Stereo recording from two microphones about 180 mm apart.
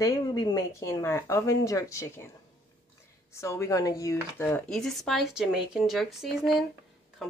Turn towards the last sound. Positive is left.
turn(degrees=0)  # may be behind; listen again after turning